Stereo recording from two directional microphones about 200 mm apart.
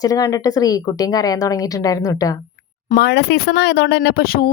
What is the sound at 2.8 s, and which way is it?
Speech, 50° left (ahead or behind).